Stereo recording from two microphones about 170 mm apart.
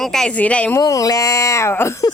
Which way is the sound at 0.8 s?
20° left (ahead or behind).